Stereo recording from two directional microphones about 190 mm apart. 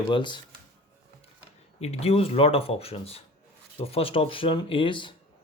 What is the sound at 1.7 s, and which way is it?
Speech, 35° left (ahead or behind).